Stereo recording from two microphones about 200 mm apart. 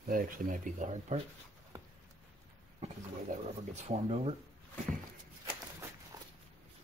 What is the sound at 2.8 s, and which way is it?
Speech, 35° right (ahead or behind).